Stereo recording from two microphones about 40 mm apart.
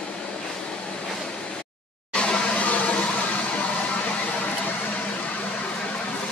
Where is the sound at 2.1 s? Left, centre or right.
Left.